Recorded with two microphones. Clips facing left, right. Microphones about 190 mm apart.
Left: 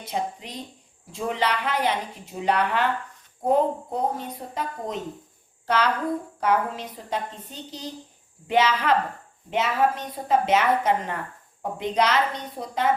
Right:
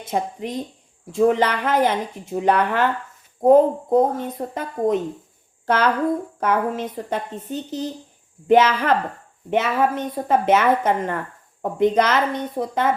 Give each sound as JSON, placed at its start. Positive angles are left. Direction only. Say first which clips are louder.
{"t": 0.0, "sound": "a woman's voice", "louder": "right 5 dB", "side_deg": -50}